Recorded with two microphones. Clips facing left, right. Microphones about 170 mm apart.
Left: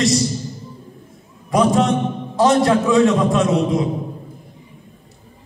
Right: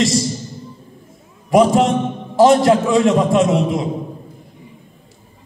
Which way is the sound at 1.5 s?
25° right (ahead or behind).